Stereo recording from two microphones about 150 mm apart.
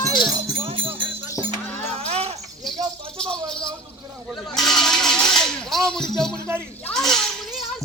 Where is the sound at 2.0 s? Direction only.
45° right (ahead or behind).